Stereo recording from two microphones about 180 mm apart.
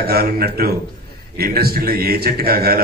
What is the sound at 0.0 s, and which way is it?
A man's voice, 60° right (ahead or behind).